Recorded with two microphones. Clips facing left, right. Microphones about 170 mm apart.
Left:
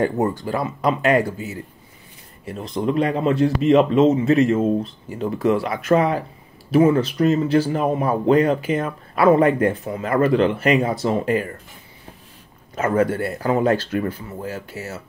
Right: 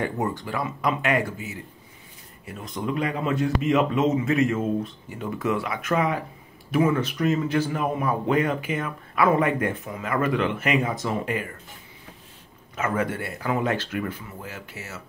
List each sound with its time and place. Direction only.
0.0 s speech: 35° left (ahead or behind)
12.7 s speech: 35° left (ahead or behind)